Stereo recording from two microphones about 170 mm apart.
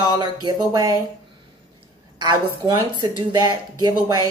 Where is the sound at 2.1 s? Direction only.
25° right (ahead or behind).